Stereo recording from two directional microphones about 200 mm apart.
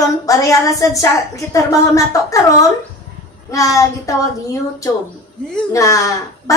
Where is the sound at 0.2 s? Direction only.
15° left (ahead or behind).